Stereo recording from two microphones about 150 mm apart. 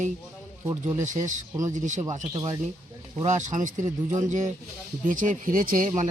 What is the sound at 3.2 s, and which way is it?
Speech, 55° right (ahead or behind).